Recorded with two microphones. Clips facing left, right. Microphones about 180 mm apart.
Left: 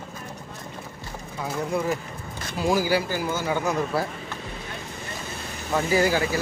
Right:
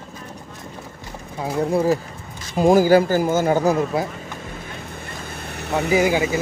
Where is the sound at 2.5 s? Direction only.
50° right (ahead or behind).